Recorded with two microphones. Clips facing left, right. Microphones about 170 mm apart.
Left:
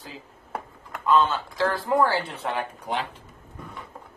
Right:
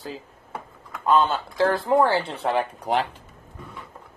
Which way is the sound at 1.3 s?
30° right (ahead or behind).